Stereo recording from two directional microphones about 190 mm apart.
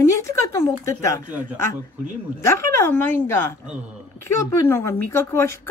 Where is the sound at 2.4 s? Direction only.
15° left (ahead or behind).